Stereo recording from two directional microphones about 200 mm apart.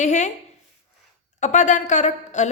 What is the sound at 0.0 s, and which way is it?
Speech, 35° left (ahead or behind).